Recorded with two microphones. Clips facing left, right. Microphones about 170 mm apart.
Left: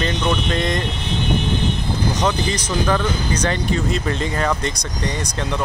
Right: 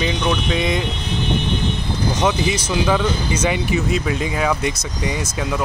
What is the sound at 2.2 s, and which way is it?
Speech, 10° right (ahead or behind).